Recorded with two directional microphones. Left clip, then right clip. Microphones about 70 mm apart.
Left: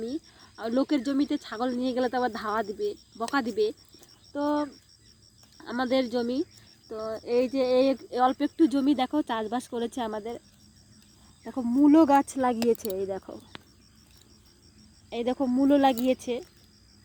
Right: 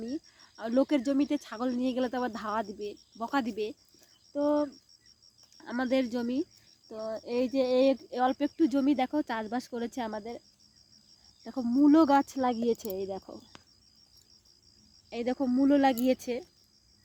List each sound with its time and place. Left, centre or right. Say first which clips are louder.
0.0 s a sound: left 4 dB; right
0.7 s speech: even; right
5.5 s speech: left 3 dB; right
8.1 s speech: left 4 dB; right
11.4 s speech: left 2 dB; right
11.9 s speech: left 3 dB; right
15.1 s speech: left 3 dB; right
15.4 s speech: left 1 dB; right
15.7 s speech: left 3 dB; right
16.0 s speech: left 2 dB; right